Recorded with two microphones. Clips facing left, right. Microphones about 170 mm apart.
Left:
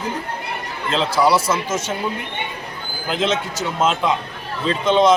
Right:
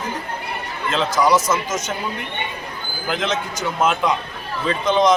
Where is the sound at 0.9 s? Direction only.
30° left (ahead or behind).